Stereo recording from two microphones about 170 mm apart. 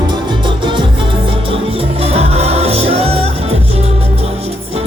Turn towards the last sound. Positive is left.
turn(degrees=-35)  # may be behind; listen again after turning